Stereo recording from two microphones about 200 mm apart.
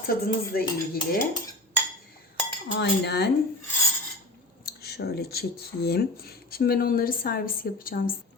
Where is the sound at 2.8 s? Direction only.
55° left (ahead or behind).